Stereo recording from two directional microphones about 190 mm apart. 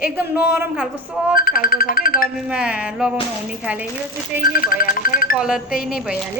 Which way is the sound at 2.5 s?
5° right (ahead or behind).